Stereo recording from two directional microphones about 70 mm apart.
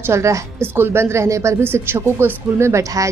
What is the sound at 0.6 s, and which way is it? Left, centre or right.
Speech, right.